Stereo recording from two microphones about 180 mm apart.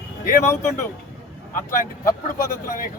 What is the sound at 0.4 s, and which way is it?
Speech, 15° left (ahead or behind).